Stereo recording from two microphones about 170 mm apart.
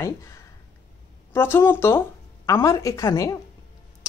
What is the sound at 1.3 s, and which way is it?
Speech, 15° left (ahead or behind).